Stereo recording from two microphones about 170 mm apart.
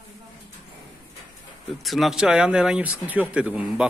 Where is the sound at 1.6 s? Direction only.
Centre (ahead or behind).